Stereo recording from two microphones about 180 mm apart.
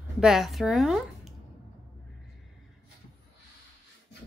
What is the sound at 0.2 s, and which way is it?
Speech, centre (ahead or behind).